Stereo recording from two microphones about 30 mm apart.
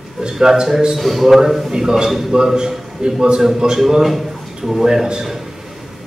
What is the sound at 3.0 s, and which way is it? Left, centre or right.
Speech, right.